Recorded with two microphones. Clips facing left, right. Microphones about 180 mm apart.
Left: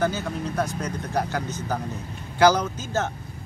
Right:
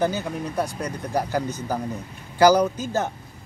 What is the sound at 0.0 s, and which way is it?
Speech, 15° right (ahead or behind).